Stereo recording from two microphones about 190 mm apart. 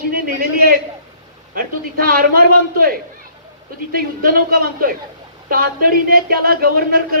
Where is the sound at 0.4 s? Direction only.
50° right (ahead or behind).